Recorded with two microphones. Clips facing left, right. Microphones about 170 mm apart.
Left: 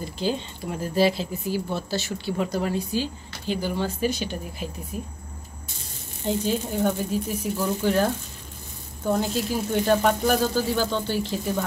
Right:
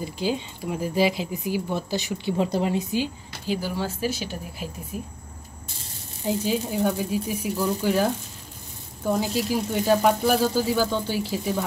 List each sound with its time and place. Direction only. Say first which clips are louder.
0.0 s speech: even; 10° right (ahead or behind)
3.4 s speech: left 1 dB; 5° right (ahead or behind)
6.2 s speech: even; 10° right (ahead or behind)